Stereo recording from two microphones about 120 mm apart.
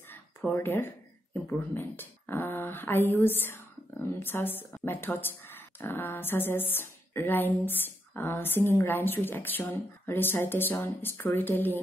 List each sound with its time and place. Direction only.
0.5 s speech: 20° left (ahead or behind)